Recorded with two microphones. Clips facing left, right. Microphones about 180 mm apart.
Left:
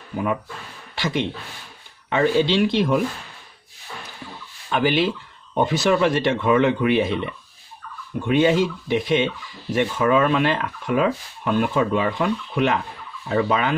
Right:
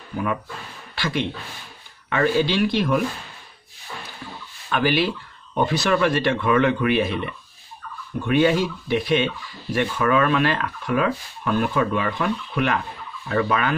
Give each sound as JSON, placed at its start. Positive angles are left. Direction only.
{"t": 0.9, "sound": "speech", "side_deg": 20}
{"t": 4.6, "sound": "speech", "side_deg": 20}